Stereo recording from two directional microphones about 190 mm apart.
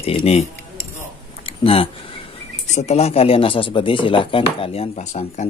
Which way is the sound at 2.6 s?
35° left (ahead or behind).